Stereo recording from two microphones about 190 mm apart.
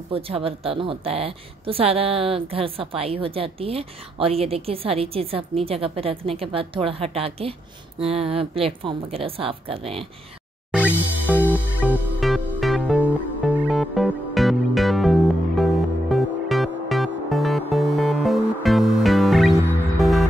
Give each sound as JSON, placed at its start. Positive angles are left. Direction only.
{"t": 0.1, "sound": "a woman's voice", "side_deg": -30}
{"t": 10.7, "sound": "music", "side_deg": -10}